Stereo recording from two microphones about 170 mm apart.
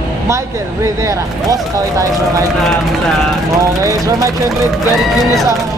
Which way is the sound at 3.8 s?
20° right (ahead or behind).